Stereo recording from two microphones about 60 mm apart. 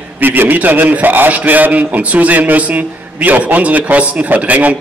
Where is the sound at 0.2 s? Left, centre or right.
Right.